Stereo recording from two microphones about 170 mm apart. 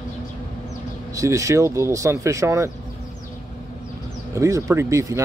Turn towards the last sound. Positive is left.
turn(degrees=-20)  # may be behind; listen again after turning